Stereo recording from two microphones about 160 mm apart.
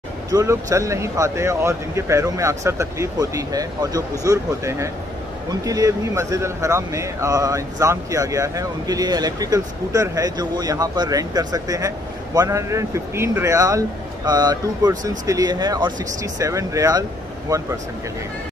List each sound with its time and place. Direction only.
0.3 s speech: 20° right (ahead or behind)